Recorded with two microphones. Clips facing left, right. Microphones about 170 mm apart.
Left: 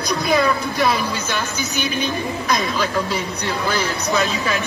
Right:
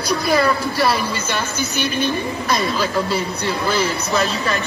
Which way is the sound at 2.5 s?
5° right (ahead or behind).